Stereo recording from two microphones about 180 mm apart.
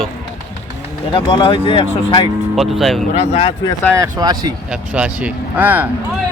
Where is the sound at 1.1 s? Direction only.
25° left (ahead or behind).